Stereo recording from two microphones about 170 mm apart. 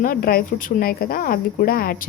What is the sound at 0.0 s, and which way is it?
A woman's voice, 60° left (ahead or behind).